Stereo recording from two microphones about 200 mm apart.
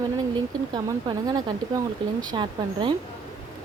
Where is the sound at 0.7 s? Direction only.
20° right (ahead or behind).